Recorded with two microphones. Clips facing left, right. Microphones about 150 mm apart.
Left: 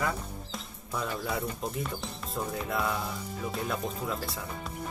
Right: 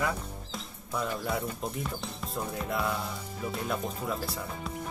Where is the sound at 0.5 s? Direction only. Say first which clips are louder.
Right 2 dB; centre (ahead or behind).